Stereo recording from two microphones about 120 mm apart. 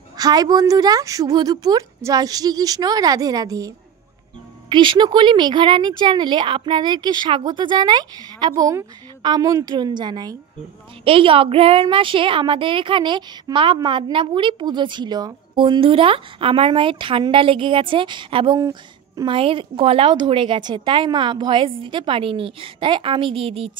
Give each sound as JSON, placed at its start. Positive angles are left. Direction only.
{"t": 0.2, "sound": "speech", "side_deg": -35}
{"t": 11.1, "sound": "a woman's voice", "side_deg": -50}
{"t": 18.6, "sound": "a woman's voice", "side_deg": -25}
{"t": 19.2, "sound": "a woman's voice", "side_deg": -50}